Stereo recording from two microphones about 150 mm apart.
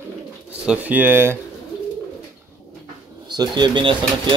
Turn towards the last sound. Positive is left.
turn(degrees=-35)  # may be behind; listen again after turning